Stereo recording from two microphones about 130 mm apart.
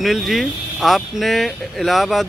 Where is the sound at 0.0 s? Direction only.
Centre (ahead or behind).